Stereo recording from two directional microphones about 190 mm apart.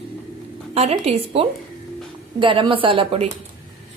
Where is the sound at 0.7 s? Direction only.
35° right (ahead or behind).